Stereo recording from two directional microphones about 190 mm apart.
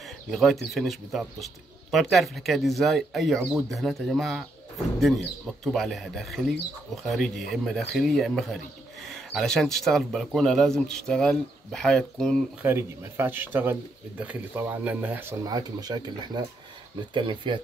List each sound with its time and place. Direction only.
0.3 s speech: centre (ahead or behind)
12.6 s speech: 10° right (ahead or behind)
17.1 s speech: 25° right (ahead or behind)